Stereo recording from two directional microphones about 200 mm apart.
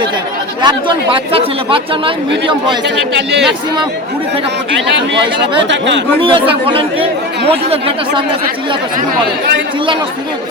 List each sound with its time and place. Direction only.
0.6 s speech: 20° right (ahead or behind)
2.8 s speech: 60° right (ahead or behind)
5.6 s speech: 65° right (ahead or behind)
6.1 s speech: 25° right (ahead or behind)